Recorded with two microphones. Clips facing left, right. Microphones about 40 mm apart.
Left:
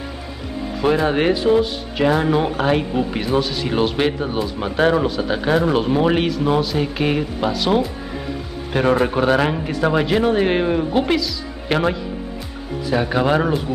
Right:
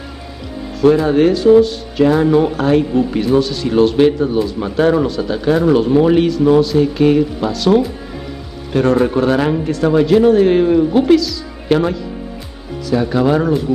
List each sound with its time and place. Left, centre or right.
0.7 s speech: centre
9.0 s speech: centre